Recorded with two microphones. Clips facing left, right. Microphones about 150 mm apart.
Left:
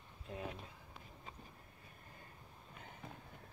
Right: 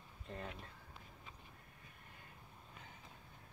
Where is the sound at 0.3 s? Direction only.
5° left (ahead or behind).